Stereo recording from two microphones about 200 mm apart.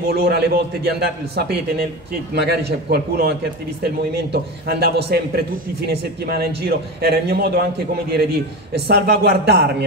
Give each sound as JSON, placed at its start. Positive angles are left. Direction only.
{"t": 0.0, "sound": "a man's voice", "side_deg": -50}